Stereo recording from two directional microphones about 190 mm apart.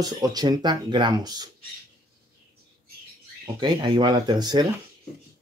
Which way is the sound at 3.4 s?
25° right (ahead or behind).